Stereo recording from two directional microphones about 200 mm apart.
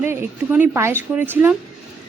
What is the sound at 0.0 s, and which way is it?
Speech, 10° right (ahead or behind).